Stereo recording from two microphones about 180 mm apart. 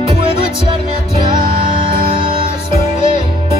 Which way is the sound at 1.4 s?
25° right (ahead or behind).